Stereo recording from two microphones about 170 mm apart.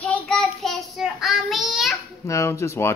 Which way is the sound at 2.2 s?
15° left (ahead or behind).